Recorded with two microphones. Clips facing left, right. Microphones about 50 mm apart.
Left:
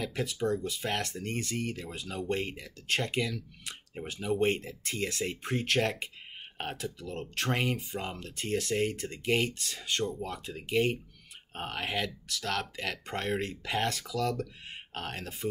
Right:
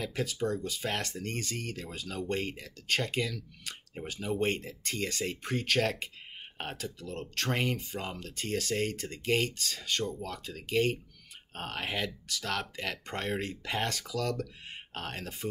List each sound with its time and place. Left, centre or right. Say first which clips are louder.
0.0 s speech: left 1 dB; centre